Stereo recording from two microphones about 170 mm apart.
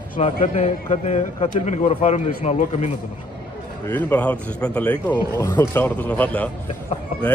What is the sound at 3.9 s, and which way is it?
A man's voice, 10° left (ahead or behind).